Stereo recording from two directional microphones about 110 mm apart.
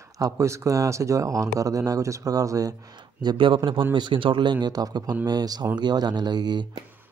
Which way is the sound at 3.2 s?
45° right (ahead or behind).